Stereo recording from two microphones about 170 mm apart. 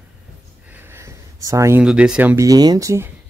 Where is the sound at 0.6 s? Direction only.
15° right (ahead or behind).